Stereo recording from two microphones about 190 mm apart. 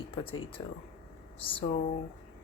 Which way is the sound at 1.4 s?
30° left (ahead or behind).